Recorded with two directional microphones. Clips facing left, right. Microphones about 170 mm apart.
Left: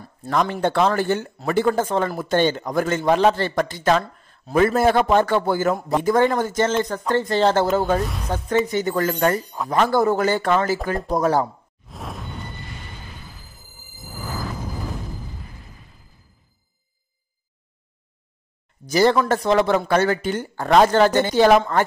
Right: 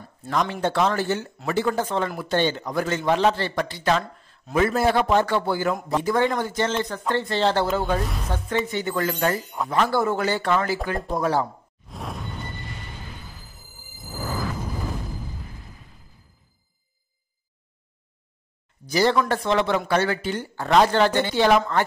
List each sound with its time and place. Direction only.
0.3 s speech: 55° left (ahead or behind)
1.7 s a man's voice: 45° left (ahead or behind)
11.9 s a sound: centre (ahead or behind)
18.9 s a man's voice: 50° left (ahead or behind)